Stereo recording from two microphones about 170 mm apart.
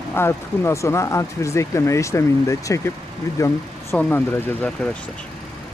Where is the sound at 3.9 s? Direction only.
5° left (ahead or behind).